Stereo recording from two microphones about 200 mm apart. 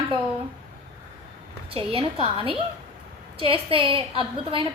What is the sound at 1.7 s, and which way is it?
A woman's voice, 25° right (ahead or behind).